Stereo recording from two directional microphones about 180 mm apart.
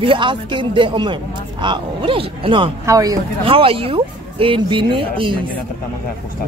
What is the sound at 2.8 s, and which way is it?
Speech, 20° right (ahead or behind).